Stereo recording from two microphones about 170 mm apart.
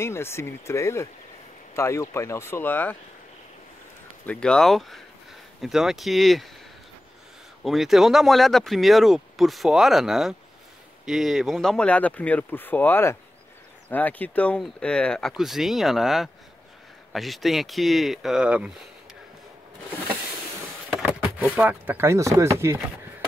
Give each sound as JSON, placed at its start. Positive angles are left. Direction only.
{"t": 0.0, "sound": "speech", "side_deg": 15}
{"t": 4.3, "sound": "speech", "side_deg": 5}
{"t": 7.6, "sound": "speech", "side_deg": 0}
{"t": 21.0, "sound": "speech", "side_deg": -10}